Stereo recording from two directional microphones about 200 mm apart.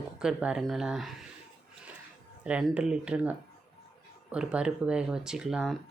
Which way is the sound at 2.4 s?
5° right (ahead or behind).